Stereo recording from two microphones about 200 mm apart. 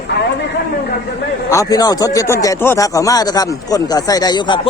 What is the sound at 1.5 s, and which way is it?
A man's voice, 15° left (ahead or behind).